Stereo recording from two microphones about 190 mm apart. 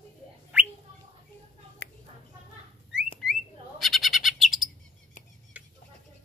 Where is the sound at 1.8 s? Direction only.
65° left (ahead or behind).